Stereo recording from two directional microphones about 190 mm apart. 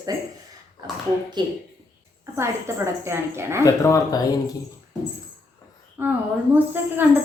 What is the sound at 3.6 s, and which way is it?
Speech, 15° left (ahead or behind).